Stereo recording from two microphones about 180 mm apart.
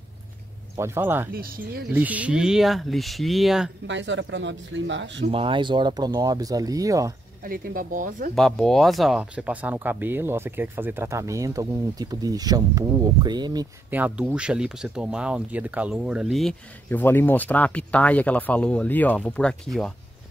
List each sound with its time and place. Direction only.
0.7 s speech: 15° right (ahead or behind)
1.3 s speech: 55° right (ahead or behind)
2.0 s speech: 10° right (ahead or behind)
3.8 s speech: 90° right
5.2 s speech: 30° right (ahead or behind)
7.4 s speech: 50° right (ahead or behind)
8.4 s speech: centre (ahead or behind); by 13.7 s 25° right (ahead or behind)
13.8 s speech: 10° right (ahead or behind)